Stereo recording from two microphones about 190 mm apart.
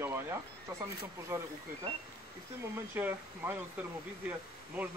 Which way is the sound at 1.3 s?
15° right (ahead or behind).